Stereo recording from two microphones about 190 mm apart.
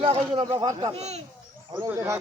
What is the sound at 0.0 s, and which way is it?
Speech, 30° right (ahead or behind).